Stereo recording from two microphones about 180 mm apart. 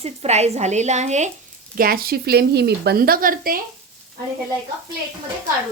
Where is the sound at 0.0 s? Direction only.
35° right (ahead or behind).